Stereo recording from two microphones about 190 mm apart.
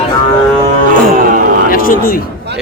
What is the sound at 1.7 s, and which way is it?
Music, 50° left (ahead or behind).